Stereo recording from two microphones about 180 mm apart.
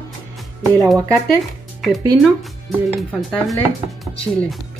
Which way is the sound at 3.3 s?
5° left (ahead or behind).